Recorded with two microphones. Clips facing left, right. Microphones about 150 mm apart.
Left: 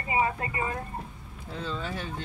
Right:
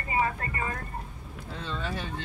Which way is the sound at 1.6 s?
5° left (ahead or behind).